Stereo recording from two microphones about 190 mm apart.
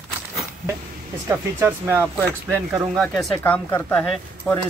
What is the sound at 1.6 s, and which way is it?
Speech, 10° right (ahead or behind).